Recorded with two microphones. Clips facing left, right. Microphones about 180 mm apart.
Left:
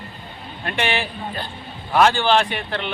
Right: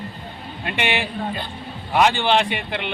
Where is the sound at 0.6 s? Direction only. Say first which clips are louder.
Even; 15° right (ahead or behind).